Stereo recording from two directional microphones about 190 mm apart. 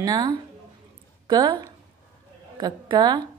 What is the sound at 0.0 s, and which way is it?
A woman's voice, 20° right (ahead or behind).